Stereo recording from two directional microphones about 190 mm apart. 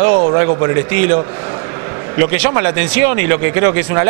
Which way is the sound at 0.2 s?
30° right (ahead or behind).